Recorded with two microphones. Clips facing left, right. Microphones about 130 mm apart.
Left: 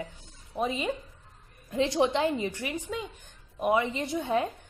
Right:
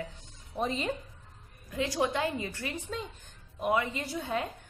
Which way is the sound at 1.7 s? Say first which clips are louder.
Left 5 dB; 25° left (ahead or behind).